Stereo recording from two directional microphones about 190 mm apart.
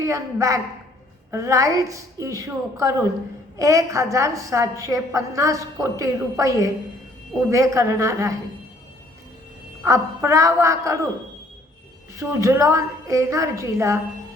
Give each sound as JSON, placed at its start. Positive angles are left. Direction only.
{"t": 0.0, "sound": "a woman's voice", "side_deg": -15}
{"t": 9.8, "sound": "a woman's voice", "side_deg": -15}
{"t": 12.1, "sound": "a woman's voice", "side_deg": -15}